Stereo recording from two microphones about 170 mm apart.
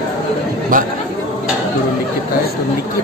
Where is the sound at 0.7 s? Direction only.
55° right (ahead or behind).